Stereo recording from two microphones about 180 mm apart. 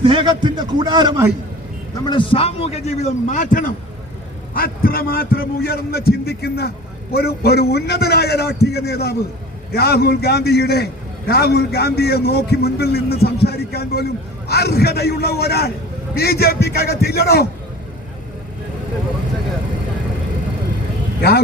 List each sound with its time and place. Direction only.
0.0 s a man's voice: 25° right (ahead or behind)
2.0 s a man's voice: 30° left (ahead or behind); by 17.5 s 60° left (ahead or behind)
21.2 s speech: 60° left (ahead or behind)